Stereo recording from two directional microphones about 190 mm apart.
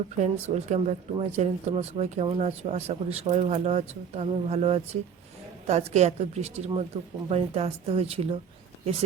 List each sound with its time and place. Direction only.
0.2 s speech: 40° right (ahead or behind)